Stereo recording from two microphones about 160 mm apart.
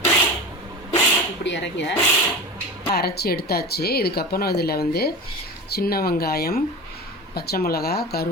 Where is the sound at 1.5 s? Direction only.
90° left.